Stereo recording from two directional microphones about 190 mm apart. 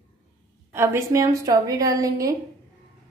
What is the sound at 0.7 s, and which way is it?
A woman's voice, 15° right (ahead or behind).